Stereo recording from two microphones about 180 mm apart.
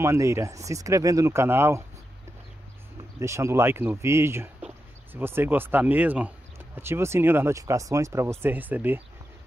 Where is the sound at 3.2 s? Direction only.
15° right (ahead or behind).